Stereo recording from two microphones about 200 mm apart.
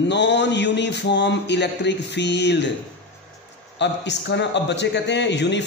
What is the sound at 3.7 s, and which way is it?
Speech, 60° left (ahead or behind).